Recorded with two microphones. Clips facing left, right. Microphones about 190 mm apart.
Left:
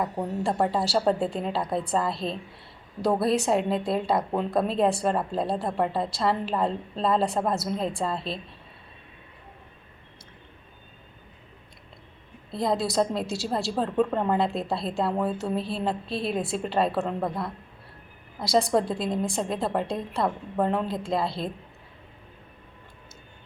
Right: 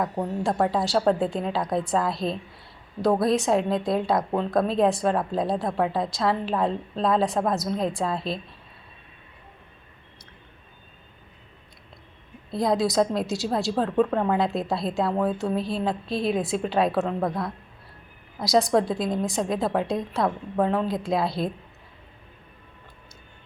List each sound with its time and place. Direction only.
0.0 s a woman's voice: 5° left (ahead or behind)
12.5 s a woman's voice: centre (ahead or behind)
13.2 s a woman's voice: 35° left (ahead or behind)
13.7 s a woman's voice: centre (ahead or behind)
18.7 s a woman's voice: centre (ahead or behind)